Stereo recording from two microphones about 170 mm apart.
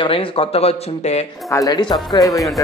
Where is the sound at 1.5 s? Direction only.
20° left (ahead or behind).